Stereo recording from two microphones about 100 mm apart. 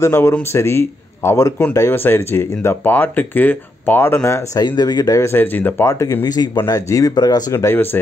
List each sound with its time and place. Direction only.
0.0 s speech: 25° left (ahead or behind)
4.6 s speech: 45° left (ahead or behind)
5.2 s speech: 20° left (ahead or behind)
5.9 s speech: 35° left (ahead or behind)
7.5 s speech: 25° left (ahead or behind)